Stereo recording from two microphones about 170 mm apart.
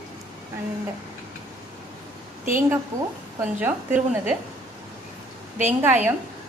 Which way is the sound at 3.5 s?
10° right (ahead or behind).